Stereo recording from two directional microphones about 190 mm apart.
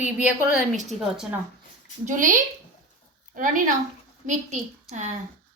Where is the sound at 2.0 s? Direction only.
40° right (ahead or behind).